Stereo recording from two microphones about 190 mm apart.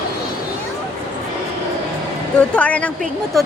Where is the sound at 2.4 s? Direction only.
5° left (ahead or behind).